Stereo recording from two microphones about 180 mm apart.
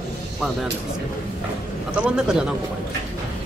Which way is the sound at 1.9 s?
5° right (ahead or behind).